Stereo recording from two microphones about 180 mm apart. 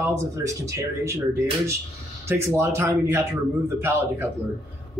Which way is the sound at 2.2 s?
15° right (ahead or behind).